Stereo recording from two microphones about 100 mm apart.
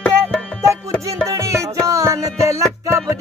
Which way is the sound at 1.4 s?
30° right (ahead or behind).